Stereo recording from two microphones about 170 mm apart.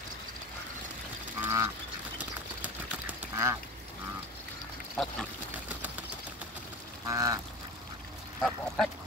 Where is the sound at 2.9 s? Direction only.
15° right (ahead or behind).